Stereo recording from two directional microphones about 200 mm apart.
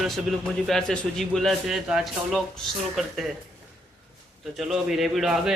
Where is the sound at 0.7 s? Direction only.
Centre (ahead or behind).